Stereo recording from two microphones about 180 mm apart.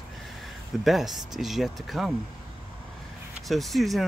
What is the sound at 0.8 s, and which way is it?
Speech, centre (ahead or behind).